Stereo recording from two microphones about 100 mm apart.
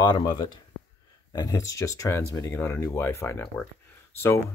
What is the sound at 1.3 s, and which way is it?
Speech, 35° left (ahead or behind).